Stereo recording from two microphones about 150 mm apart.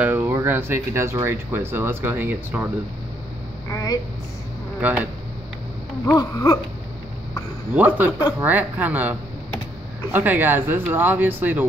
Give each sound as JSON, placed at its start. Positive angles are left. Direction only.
{"t": 0.0, "sound": "speech", "side_deg": -15}
{"t": 3.7, "sound": "speech", "side_deg": 25}
{"t": 4.7, "sound": "speech", "side_deg": -10}
{"t": 6.0, "sound": "a sound", "side_deg": 20}
{"t": 7.7, "sound": "speech", "side_deg": -10}
{"t": 10.1, "sound": "speech", "side_deg": -10}